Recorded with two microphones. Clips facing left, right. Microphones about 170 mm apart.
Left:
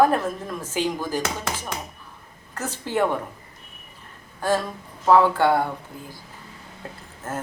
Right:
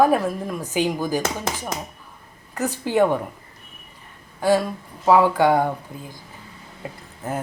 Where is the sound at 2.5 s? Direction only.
15° right (ahead or behind).